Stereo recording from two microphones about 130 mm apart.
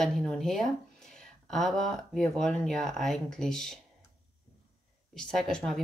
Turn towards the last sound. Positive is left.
turn(degrees=0)  # may be behind; listen again after turning